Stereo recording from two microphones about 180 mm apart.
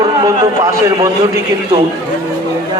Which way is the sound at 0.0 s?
20° right (ahead or behind).